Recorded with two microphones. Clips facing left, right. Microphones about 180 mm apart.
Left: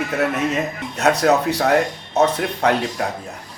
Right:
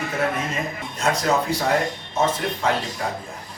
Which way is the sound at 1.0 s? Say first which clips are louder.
Left 5 dB; 65° left (ahead or behind).